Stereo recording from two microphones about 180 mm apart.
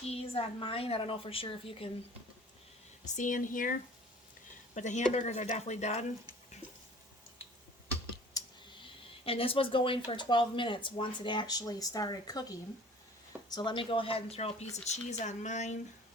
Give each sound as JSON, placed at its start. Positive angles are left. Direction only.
{"t": 0.0, "sound": "a woman's voice", "side_deg": 35}
{"t": 3.2, "sound": "a woman's voice", "side_deg": 45}
{"t": 9.2, "sound": "a woman's voice", "side_deg": 30}